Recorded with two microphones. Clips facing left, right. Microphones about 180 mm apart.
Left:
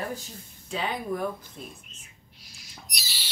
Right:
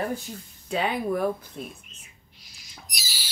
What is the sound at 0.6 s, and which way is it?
Speech, 60° right (ahead or behind).